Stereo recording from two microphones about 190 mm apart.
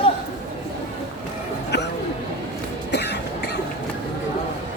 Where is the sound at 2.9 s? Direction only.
60° left (ahead or behind).